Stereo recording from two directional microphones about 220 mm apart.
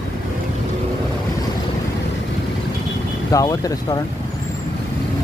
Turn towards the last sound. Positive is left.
turn(degrees=15)  # may be behind; listen again after turning